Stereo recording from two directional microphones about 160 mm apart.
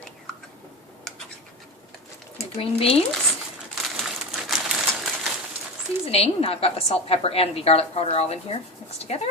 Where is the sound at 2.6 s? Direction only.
35° left (ahead or behind).